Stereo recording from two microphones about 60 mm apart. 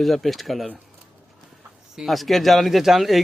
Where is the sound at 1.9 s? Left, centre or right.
Centre.